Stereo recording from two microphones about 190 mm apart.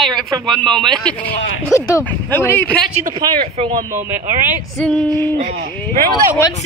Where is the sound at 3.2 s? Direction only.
20° right (ahead or behind).